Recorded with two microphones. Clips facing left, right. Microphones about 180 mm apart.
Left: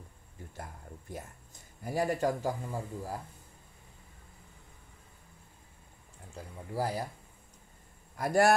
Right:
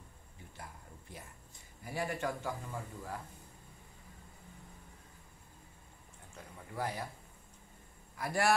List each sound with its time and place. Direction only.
1.9 s a man's voice: 40° left (ahead or behind)
6.3 s a man's voice: 35° left (ahead or behind)
8.2 s a man's voice: 45° left (ahead or behind)